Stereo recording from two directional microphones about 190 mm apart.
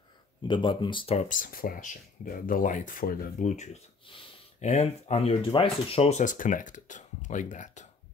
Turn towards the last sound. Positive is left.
turn(degrees=40)  # may be behind; listen again after turning